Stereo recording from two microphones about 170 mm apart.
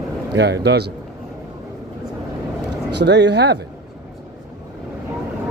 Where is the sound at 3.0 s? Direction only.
90° right.